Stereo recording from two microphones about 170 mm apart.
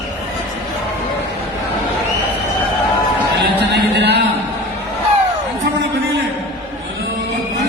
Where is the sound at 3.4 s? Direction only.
80° right.